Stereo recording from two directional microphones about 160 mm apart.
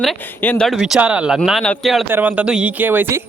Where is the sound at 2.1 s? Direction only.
10° right (ahead or behind).